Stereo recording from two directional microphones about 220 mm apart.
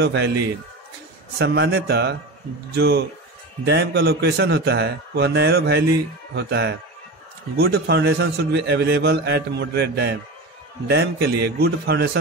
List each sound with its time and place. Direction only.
0.0 s a man's voice: 55° right (ahead or behind)
1.4 s a man's voice: 50° right (ahead or behind)